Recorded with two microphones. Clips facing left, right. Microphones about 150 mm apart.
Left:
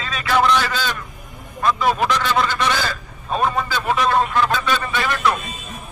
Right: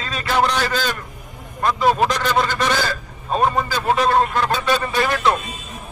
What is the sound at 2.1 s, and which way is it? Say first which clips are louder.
Speech: even; 45° right (ahead or behind).